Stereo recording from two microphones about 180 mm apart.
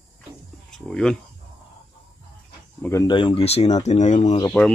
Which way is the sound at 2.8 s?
20° left (ahead or behind).